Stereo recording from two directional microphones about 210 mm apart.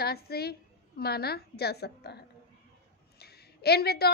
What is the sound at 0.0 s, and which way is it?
A woman's voice, 50° left (ahead or behind).